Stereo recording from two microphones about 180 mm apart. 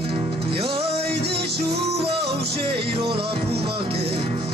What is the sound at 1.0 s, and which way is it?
Music, 65° right (ahead or behind).